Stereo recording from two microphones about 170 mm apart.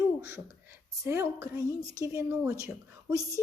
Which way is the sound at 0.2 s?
15° right (ahead or behind).